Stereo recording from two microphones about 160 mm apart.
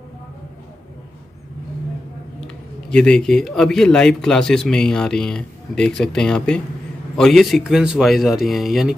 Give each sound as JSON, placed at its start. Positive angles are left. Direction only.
{"t": 2.4, "sound": "speech", "side_deg": 5}